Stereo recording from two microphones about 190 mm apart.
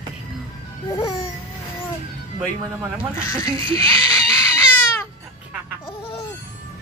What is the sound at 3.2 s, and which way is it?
Speech, 15° left (ahead or behind).